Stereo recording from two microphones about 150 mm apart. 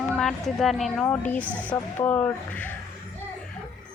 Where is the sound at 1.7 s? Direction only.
10° left (ahead or behind).